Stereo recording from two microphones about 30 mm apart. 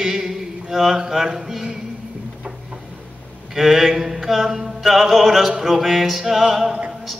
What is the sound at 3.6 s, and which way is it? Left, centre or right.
Music, centre.